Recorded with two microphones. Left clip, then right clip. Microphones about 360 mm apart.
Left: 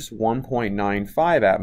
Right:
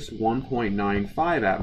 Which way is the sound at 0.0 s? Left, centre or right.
Left.